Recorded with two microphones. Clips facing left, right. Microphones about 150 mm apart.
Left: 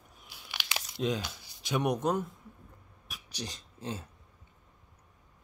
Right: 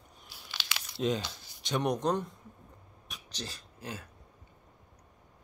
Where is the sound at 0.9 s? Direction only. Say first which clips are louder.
Right 1 dB; centre (ahead or behind).